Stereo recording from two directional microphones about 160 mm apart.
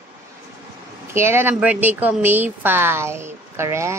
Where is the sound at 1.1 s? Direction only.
15° right (ahead or behind).